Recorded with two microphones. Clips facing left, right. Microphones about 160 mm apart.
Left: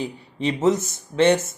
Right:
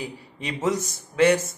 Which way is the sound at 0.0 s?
25° left (ahead or behind).